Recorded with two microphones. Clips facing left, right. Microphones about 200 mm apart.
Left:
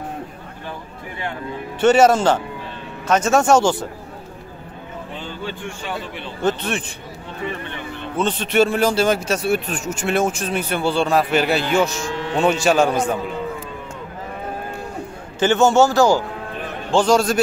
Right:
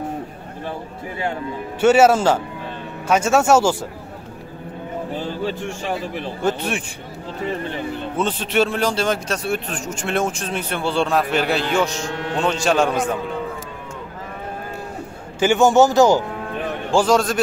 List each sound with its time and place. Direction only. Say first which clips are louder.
1.8 s a man's voice: even; 5° right (ahead or behind)
5.1 s speech: right 5 dB; 35° right (ahead or behind)
6.4 s speech: left 1 dB; 10° right (ahead or behind)
8.2 s a man's voice: left 2 dB; 5° right (ahead or behind)
15.3 s a man's voice: right 1 dB; 10° right (ahead or behind)
16.9 s a man's voice: left 1 dB; centre (ahead or behind)